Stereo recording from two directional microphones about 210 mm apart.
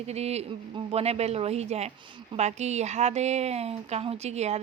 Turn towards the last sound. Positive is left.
turn(degrees=-30)  # may be behind; listen again after turning